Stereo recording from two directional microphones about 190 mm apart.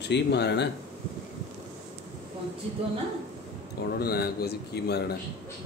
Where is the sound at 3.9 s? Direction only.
55° left (ahead or behind).